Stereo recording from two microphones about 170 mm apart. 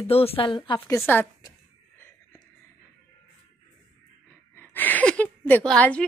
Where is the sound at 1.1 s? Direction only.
15° left (ahead or behind).